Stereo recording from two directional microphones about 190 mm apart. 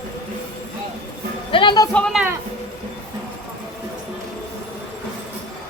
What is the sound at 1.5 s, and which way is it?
Music, 25° left (ahead or behind).